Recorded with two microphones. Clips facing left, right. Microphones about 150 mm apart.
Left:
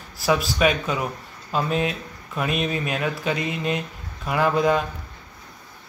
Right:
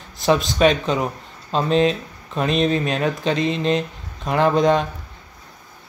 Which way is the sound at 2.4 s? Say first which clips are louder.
Right 6 dB; 10° left (ahead or behind).